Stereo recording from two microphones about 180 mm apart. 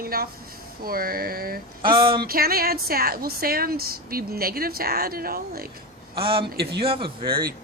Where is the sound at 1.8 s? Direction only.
25° right (ahead or behind).